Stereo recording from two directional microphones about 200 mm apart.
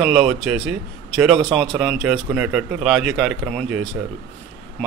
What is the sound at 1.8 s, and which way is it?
A man's voice, centre (ahead or behind).